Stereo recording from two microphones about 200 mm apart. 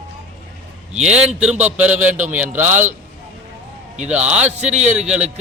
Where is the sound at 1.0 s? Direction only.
5° right (ahead or behind).